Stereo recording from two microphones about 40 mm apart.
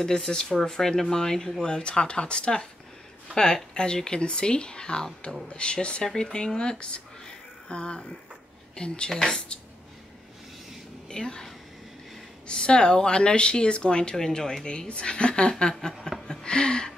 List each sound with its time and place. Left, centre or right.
0.0 s speech: centre
3.7 s speech: centre
9.1 s speech: centre
11.1 s speech: centre
12.4 s speech: left
14.1 s speech: centre
15.9 s chuckle: centre
16.3 s a sound: left